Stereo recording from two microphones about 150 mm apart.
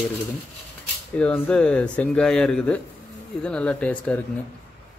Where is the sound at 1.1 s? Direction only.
10° left (ahead or behind).